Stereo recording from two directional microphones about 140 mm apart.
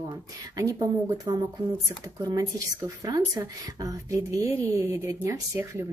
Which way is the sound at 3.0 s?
25° right (ahead or behind).